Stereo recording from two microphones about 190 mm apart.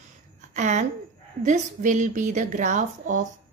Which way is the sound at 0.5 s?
40° right (ahead or behind).